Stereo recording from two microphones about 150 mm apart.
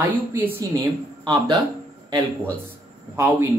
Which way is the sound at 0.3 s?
15° right (ahead or behind).